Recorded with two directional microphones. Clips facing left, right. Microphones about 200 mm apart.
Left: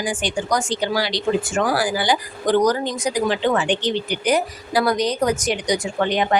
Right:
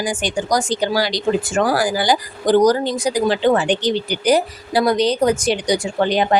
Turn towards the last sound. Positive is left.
turn(degrees=-35)  # may be behind; listen again after turning